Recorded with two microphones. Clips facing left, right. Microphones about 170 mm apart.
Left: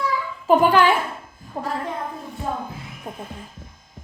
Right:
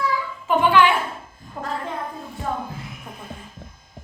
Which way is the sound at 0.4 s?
40° left (ahead or behind).